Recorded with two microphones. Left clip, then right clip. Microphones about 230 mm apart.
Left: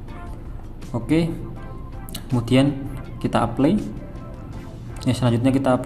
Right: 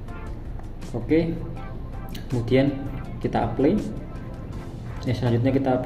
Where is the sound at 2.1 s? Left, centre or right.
Left.